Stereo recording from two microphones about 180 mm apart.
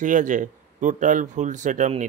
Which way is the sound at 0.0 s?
45° right (ahead or behind).